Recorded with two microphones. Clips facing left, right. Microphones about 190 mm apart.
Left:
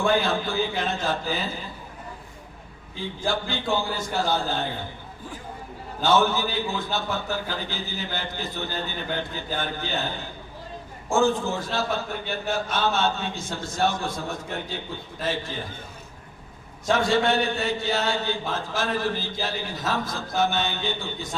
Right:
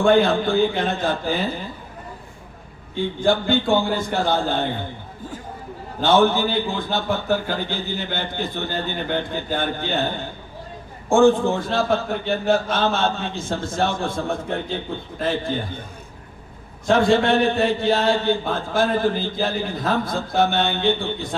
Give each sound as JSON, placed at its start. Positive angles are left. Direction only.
{"t": 0.0, "sound": "a man's voice", "side_deg": -55}
{"t": 3.2, "sound": "a man's voice", "side_deg": -55}
{"t": 6.0, "sound": "a man's voice", "side_deg": -55}
{"t": 11.1, "sound": "a man's voice", "side_deg": -55}
{"t": 16.9, "sound": "a man's voice", "side_deg": -55}